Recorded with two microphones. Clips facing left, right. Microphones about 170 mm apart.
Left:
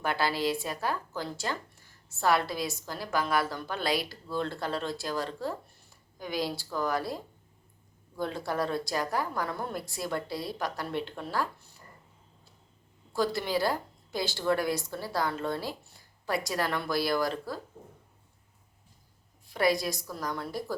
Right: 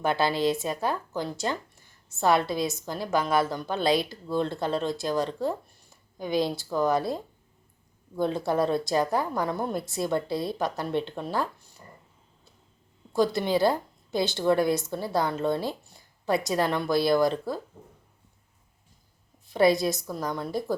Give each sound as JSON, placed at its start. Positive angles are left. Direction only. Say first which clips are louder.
{"t": 0.0, "sound": "a woman's voice", "louder": "right 5 dB", "side_deg": -20}
{"t": 13.1, "sound": "a woman's voice", "louder": "right 5 dB", "side_deg": -20}
{"t": 19.5, "sound": "a woman's voice", "louder": "right 6 dB", "side_deg": -25}